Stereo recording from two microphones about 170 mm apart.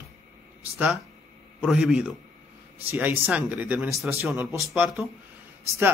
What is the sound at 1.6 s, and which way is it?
A man's voice, 5° right (ahead or behind).